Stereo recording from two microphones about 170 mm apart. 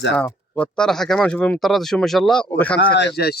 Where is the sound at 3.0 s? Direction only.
80° left.